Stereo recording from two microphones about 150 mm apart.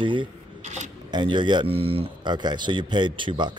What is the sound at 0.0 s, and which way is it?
Speech, 35° right (ahead or behind).